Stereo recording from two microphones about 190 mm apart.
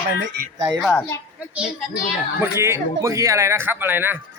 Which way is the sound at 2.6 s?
15° right (ahead or behind).